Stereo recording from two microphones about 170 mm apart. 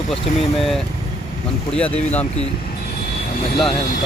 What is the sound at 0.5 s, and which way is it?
Speech, centre (ahead or behind).